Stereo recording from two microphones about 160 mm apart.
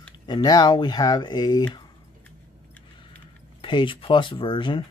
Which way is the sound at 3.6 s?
30° left (ahead or behind).